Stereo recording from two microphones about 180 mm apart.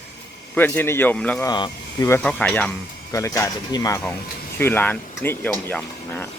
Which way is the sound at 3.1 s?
15° left (ahead or behind).